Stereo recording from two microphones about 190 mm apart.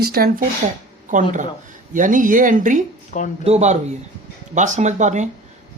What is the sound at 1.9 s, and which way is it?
Speech, 45° right (ahead or behind).